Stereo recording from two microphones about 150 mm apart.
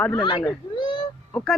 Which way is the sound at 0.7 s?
30° left (ahead or behind).